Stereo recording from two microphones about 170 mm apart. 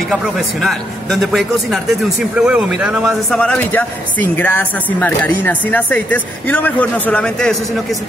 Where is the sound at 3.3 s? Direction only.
5° left (ahead or behind).